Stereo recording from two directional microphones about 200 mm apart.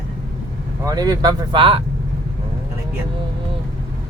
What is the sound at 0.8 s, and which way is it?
Speech, 20° right (ahead or behind).